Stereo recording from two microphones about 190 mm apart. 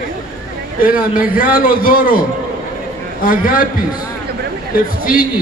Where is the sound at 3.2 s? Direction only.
50° left (ahead or behind).